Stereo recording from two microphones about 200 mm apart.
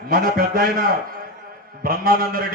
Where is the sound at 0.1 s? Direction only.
50° right (ahead or behind).